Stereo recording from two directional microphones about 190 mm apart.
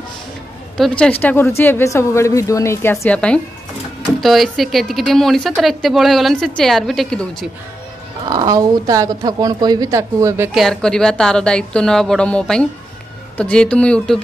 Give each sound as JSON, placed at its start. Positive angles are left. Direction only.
{"t": 0.7, "sound": "a woman's voice", "side_deg": 5}
{"t": 8.3, "sound": "speech", "side_deg": -20}
{"t": 10.6, "sound": "speech", "side_deg": 5}